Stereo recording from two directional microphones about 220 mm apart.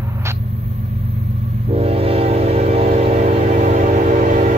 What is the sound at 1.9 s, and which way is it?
Train, 25° right (ahead or behind).